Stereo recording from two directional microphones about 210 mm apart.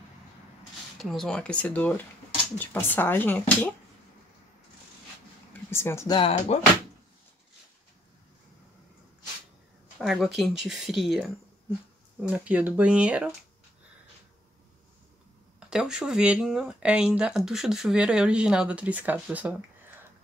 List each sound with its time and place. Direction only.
0.9 s speech: centre (ahead or behind)
5.5 s speech: 10° left (ahead or behind)
6.1 s speech: 25° left (ahead or behind)
9.9 s speech: centre (ahead or behind)
15.7 s speech: 5° right (ahead or behind)